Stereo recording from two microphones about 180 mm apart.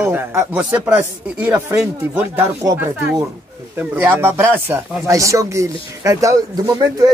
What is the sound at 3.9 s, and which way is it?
Speech, 10° right (ahead or behind).